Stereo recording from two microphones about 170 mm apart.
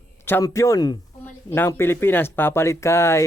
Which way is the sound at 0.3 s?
15° left (ahead or behind).